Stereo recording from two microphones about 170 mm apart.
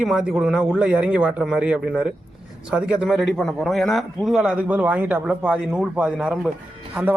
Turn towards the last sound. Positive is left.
turn(degrees=-10)  # may be behind; listen again after turning